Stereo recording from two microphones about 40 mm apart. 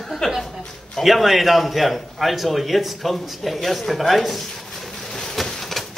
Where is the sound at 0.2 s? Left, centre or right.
Centre.